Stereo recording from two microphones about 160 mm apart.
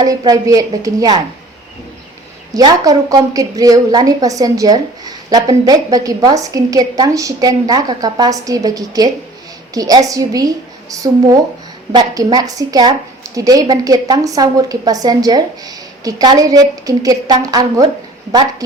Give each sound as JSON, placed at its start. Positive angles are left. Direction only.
{"t": 0.0, "sound": "a woman's voice", "side_deg": -20}
{"t": 2.5, "sound": "a woman's voice", "side_deg": -25}